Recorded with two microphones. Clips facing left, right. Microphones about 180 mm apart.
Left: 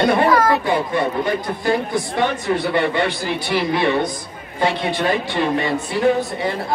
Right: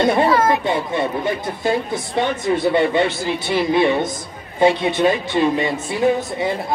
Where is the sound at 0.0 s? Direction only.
25° right (ahead or behind).